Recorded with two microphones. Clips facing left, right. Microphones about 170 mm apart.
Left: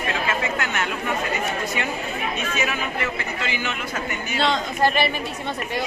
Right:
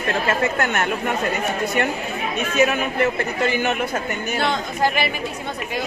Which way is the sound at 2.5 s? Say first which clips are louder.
Right 12 dB; 50° right (ahead or behind).